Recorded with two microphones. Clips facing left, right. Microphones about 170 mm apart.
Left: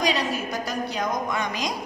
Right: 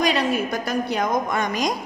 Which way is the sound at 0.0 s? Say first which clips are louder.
Right 4 dB; 55° right (ahead or behind).